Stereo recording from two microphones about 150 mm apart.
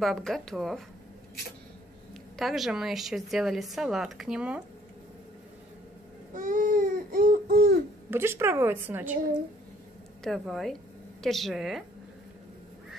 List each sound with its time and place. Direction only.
0.0 s a woman's voice: centre (ahead or behind)
2.3 s a woman's voice: centre (ahead or behind)
6.3 s baby cry: 60° right (ahead or behind); by 7.7 s 85° right
8.1 s a woman's voice: 15° right (ahead or behind)
10.2 s a woman's voice: centre (ahead or behind)